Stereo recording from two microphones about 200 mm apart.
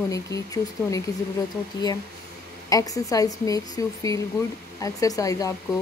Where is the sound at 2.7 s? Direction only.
15° left (ahead or behind).